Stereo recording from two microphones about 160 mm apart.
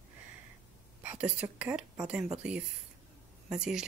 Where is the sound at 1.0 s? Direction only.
5° right (ahead or behind).